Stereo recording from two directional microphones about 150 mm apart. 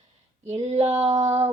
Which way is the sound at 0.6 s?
50° right (ahead or behind).